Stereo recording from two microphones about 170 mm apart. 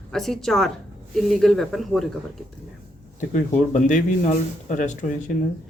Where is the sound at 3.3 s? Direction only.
45° left (ahead or behind).